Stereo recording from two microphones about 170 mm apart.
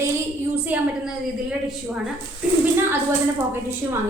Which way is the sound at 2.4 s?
5° right (ahead or behind).